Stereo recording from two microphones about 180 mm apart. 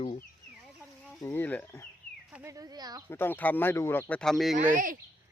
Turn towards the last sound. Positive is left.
turn(degrees=-50)  # may be behind; listen again after turning